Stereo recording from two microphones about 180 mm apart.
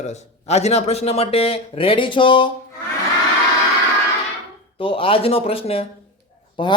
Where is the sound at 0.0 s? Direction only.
40° left (ahead or behind).